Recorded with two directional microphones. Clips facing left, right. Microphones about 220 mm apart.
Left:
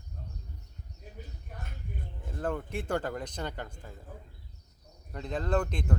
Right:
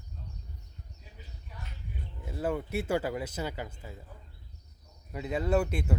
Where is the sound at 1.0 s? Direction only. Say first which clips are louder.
Left 10 dB; 50° left (ahead or behind).